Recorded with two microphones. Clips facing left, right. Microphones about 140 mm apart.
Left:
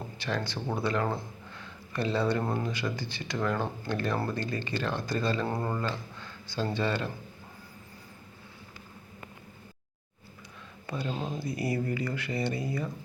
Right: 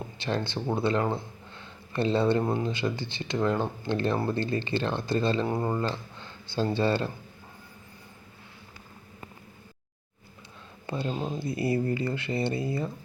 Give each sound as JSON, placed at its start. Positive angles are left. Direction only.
{"t": 0.2, "sound": "speech", "side_deg": -25}
{"t": 2.4, "sound": "speech", "side_deg": -15}
{"t": 2.6, "sound": "speech", "side_deg": -25}
{"t": 10.8, "sound": "speech", "side_deg": -25}